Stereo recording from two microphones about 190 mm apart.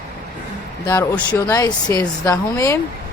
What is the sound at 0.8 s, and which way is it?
Speech, 10° left (ahead or behind).